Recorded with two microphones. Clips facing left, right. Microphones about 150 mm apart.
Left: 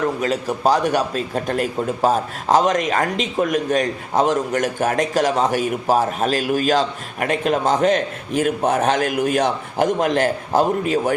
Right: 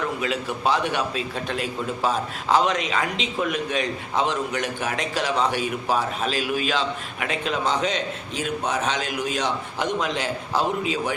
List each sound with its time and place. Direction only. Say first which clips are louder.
0.2 s a man's voice: left 5 dB; 40° left (ahead or behind)